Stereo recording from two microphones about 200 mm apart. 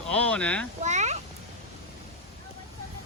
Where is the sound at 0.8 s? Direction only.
35° right (ahead or behind).